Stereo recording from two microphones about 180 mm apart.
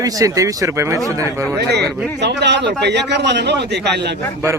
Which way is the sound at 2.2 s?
70° right (ahead or behind).